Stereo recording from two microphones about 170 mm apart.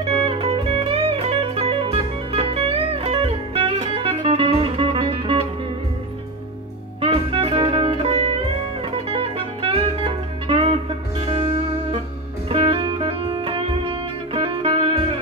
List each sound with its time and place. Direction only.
0.0 s music: 35° right (ahead or behind)
7.0 s music: 35° right (ahead or behind)
12.4 s music: 35° right (ahead or behind)